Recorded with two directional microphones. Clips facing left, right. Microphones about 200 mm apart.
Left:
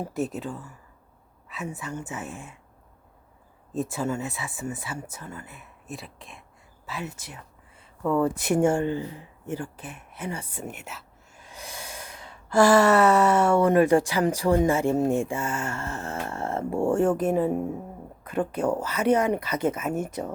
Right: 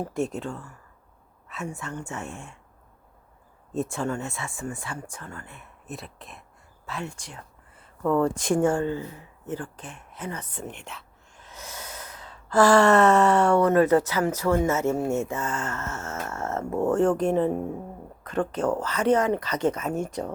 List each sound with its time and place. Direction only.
0.0 s speech: 5° left (ahead or behind)
1.7 s speech: 5° left (ahead or behind)
3.7 s speech: centre (ahead or behind)
7.8 s a sound: centre (ahead or behind)
8.2 s speech: 10° left (ahead or behind)
8.7 s speech: 20° left (ahead or behind)
9.1 s a sound: 30° left (ahead or behind)
9.5 s speech: 10° left (ahead or behind)